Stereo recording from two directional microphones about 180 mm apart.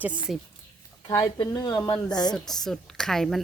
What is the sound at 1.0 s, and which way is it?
Speech, 25° left (ahead or behind).